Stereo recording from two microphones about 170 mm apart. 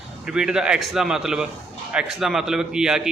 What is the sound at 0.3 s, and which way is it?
A man's voice, 5° right (ahead or behind).